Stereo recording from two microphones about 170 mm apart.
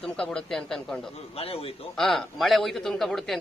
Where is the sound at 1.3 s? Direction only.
35° left (ahead or behind).